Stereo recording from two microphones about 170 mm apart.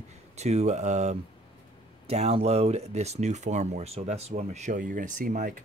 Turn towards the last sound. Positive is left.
turn(degrees=-50)  # may be behind; listen again after turning